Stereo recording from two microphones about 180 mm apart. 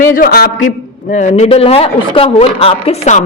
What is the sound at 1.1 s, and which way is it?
Speech, 40° left (ahead or behind).